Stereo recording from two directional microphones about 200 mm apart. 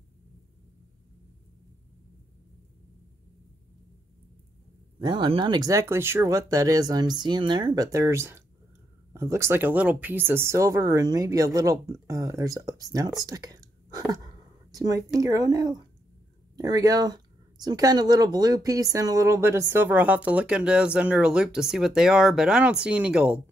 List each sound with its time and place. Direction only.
4.9 s speech: 25° right (ahead or behind)
13.2 s whispering: 20° right (ahead or behind)
14.7 s speech: 20° right (ahead or behind)